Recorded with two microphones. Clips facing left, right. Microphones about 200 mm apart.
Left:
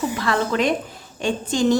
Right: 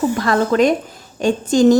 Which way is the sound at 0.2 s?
45° right (ahead or behind).